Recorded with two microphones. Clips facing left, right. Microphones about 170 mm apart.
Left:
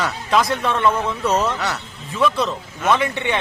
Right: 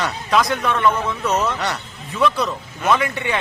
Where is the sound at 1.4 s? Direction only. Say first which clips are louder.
Even; 5° left (ahead or behind).